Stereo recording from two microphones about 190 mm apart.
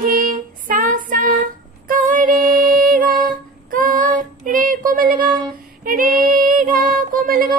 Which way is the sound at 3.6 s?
45° right (ahead or behind).